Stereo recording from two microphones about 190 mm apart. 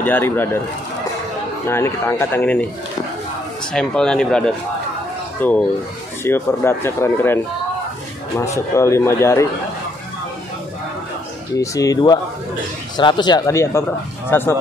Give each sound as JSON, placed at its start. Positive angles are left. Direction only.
{"t": 0.0, "sound": "speech", "side_deg": 10}
{"t": 1.7, "sound": "speech", "side_deg": 15}
{"t": 3.7, "sound": "speech", "side_deg": 5}
{"t": 8.4, "sound": "speech", "side_deg": 15}
{"t": 11.5, "sound": "speech", "side_deg": 15}